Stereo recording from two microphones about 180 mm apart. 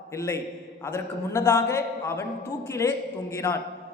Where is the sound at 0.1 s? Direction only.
15° left (ahead or behind).